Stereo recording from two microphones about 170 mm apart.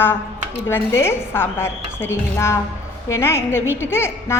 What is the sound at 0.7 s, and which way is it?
A woman's voice, 15° left (ahead or behind).